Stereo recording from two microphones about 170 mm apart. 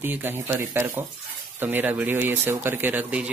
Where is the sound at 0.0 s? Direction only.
10° right (ahead or behind).